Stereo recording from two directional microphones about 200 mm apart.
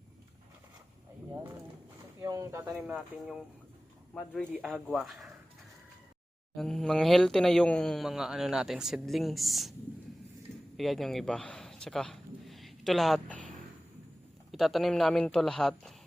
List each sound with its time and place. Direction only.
2.2 s a sound: 15° right (ahead or behind)
2.6 s speech: 5° right (ahead or behind)
6.6 s speech: centre (ahead or behind)
10.8 s a man's voice: centre (ahead or behind)
14.5 s speech: centre (ahead or behind)